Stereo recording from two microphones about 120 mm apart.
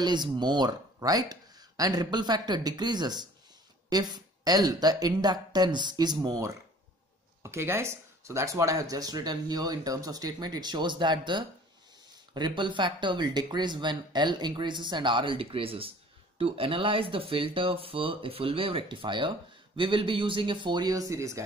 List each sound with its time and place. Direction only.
0.0 s speech: 35° right (ahead or behind)